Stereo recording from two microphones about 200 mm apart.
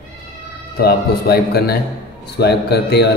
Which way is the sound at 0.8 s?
50° left (ahead or behind).